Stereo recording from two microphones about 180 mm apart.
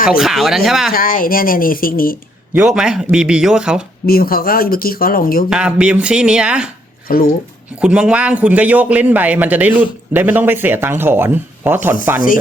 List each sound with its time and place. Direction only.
0.2 s a man's voice: centre (ahead or behind)
0.9 s speech: 50° left (ahead or behind)
2.5 s a man's voice: 5° right (ahead or behind)
4.0 s speech: 55° left (ahead or behind)
5.5 s a man's voice: 5° right (ahead or behind)
7.1 s speech: 50° left (ahead or behind)
7.8 s a man's voice: 5° right (ahead or behind)